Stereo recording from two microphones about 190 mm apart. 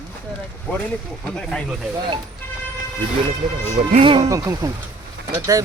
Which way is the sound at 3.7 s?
35° right (ahead or behind).